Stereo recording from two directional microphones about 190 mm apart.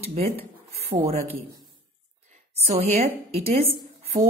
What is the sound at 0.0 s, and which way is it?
Speech, 35° right (ahead or behind).